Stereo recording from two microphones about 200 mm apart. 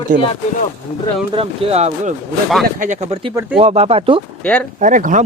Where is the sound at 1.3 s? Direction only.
25° right (ahead or behind).